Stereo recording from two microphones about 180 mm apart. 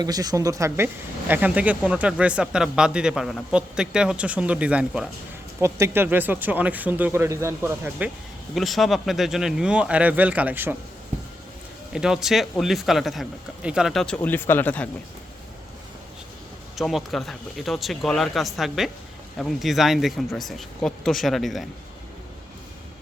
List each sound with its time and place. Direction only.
0.0 s speech: 20° right (ahead or behind)
11.9 s speech: 5° right (ahead or behind)
16.7 s speech: centre (ahead or behind)